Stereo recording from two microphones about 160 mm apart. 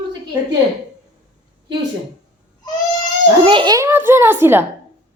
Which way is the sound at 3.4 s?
30° right (ahead or behind).